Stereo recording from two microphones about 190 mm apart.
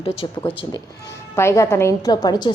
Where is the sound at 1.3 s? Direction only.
15° left (ahead or behind).